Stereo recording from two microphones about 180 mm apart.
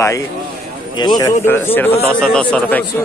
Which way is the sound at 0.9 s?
25° left (ahead or behind).